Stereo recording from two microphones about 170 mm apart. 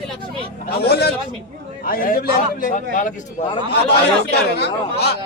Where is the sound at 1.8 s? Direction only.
55° left (ahead or behind).